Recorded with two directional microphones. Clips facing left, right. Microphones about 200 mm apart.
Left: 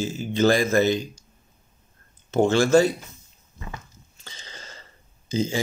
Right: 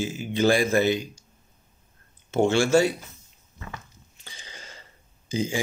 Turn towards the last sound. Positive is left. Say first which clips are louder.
# left 2 dB
turn(degrees=-15)  # may be behind; listen again after turning